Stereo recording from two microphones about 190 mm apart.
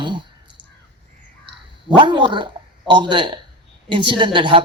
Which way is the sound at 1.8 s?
25° right (ahead or behind).